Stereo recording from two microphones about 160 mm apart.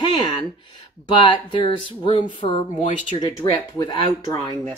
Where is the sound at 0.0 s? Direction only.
30° left (ahead or behind).